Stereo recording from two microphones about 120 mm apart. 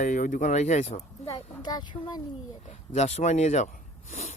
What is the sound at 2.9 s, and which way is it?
Speech, 65° left (ahead or behind).